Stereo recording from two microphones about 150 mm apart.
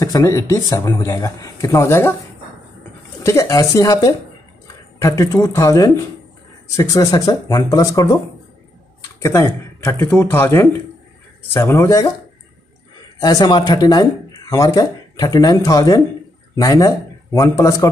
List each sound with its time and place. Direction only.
0.0 s speech: 20° left (ahead or behind)
3.3 s speech: 25° left (ahead or behind)
9.2 s speech: 20° left (ahead or behind)
13.2 s speech: 30° left (ahead or behind)